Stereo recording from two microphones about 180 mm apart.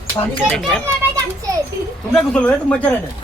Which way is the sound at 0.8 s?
20° right (ahead or behind).